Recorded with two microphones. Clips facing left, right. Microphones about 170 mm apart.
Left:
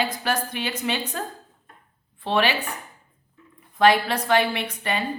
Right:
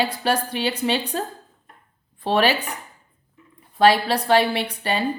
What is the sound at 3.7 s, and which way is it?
A woman's voice, 35° right (ahead or behind).